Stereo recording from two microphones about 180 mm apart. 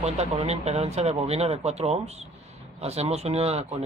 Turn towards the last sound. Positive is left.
turn(degrees=-35)  # may be behind; listen again after turning